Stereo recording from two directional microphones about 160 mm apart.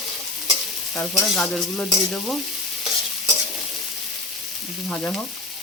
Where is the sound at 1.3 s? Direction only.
5° left (ahead or behind).